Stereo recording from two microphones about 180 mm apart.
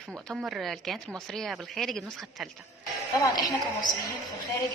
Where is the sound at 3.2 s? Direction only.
20° left (ahead or behind).